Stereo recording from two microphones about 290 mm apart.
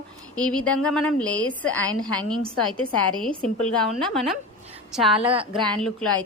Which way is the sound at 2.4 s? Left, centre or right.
Centre.